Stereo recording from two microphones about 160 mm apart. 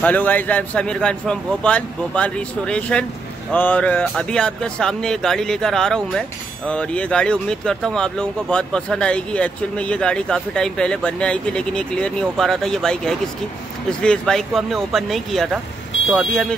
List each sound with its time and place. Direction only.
0.0 s a man's voice: 10° left (ahead or behind)